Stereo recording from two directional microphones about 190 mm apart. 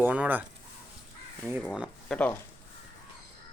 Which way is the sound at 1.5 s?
5° right (ahead or behind).